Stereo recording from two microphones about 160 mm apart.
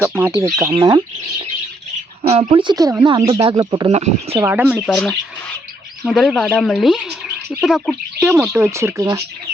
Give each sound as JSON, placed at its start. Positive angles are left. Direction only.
{"t": 0.0, "sound": "speech", "side_deg": -10}
{"t": 3.9, "sound": "speech", "side_deg": -40}
{"t": 4.4, "sound": "speech", "side_deg": -15}